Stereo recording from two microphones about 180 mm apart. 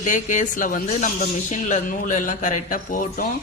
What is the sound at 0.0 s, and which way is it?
A man's voice, 45° left (ahead or behind).